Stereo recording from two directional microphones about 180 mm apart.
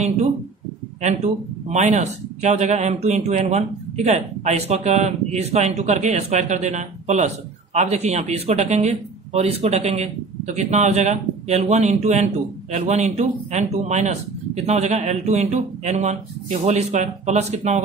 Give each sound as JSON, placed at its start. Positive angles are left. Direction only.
{"t": 1.0, "sound": "speech", "side_deg": -40}